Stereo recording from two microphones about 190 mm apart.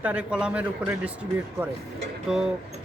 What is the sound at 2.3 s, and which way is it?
Speech, 5° right (ahead or behind).